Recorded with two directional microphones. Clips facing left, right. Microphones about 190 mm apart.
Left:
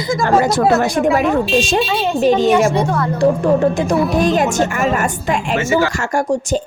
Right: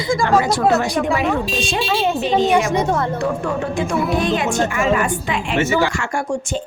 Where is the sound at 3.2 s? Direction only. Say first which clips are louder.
Left 8 dB; 35° left (ahead or behind).